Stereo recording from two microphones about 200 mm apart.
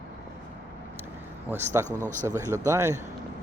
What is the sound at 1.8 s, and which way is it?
Speech, 15° right (ahead or behind).